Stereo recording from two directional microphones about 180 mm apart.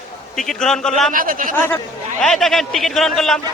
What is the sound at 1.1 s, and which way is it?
Speech, 50° right (ahead or behind).